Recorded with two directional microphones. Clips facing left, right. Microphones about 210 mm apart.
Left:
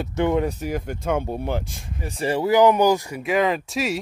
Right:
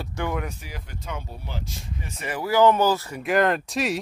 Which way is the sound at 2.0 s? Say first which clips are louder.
Left 8 dB; 30° left (ahead or behind).